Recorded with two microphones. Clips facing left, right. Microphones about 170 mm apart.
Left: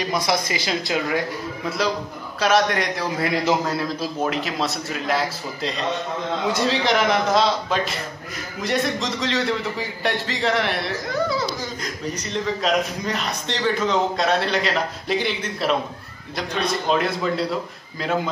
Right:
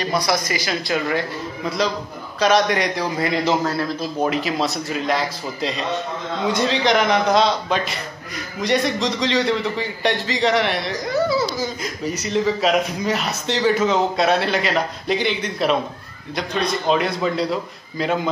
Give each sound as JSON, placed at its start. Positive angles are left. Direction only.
{"t": 0.0, "sound": "speech", "side_deg": 20}
{"t": 2.4, "sound": "a man's voice", "side_deg": 0}